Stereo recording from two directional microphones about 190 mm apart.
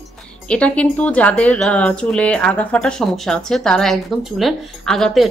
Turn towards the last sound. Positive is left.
turn(degrees=0)  # may be behind; listen again after turning